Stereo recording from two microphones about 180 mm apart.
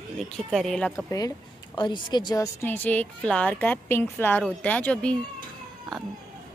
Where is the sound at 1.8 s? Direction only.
25° left (ahead or behind); by 5.1 s 5° left (ahead or behind).